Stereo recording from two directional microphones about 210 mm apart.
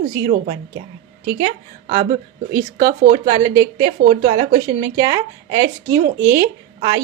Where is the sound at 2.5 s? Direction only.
15° right (ahead or behind).